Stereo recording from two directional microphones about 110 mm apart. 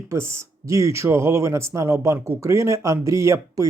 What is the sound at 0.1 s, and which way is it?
Speech, 25° right (ahead or behind).